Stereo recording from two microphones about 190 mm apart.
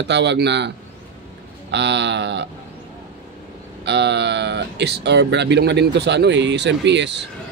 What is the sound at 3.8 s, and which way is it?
Speech, 65° right (ahead or behind).